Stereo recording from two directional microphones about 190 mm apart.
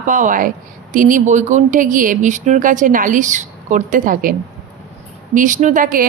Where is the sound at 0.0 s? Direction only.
45° right (ahead or behind).